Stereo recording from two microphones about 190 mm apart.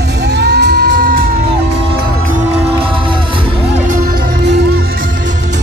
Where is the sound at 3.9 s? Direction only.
50° right (ahead or behind).